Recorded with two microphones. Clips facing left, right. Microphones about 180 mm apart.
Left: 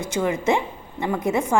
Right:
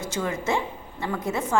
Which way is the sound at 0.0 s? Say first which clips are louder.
Left 5 dB; 15° left (ahead or behind).